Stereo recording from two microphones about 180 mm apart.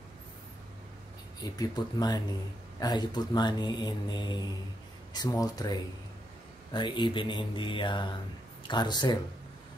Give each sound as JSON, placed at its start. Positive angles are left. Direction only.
{"t": 1.4, "sound": "speech", "side_deg": 20}